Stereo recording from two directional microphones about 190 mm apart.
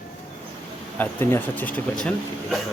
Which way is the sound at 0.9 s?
10° left (ahead or behind).